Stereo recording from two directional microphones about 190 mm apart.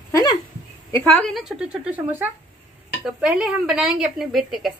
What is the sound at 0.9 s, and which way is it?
A woman's voice, 5° left (ahead or behind).